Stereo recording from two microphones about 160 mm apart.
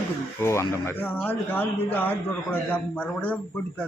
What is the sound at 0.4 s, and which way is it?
Speech, 15° left (ahead or behind).